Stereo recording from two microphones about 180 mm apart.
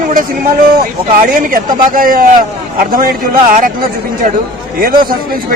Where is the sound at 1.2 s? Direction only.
50° right (ahead or behind).